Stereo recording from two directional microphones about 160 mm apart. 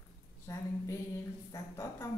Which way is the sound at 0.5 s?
20° left (ahead or behind).